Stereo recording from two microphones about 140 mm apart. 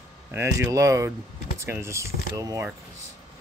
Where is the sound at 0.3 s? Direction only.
20° right (ahead or behind).